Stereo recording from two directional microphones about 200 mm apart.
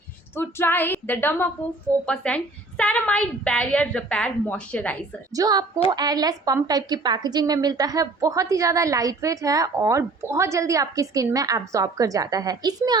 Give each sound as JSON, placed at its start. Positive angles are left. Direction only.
{"t": 0.3, "sound": "a woman's voice", "side_deg": 10}
{"t": 5.3, "sound": "a woman's voice", "side_deg": -20}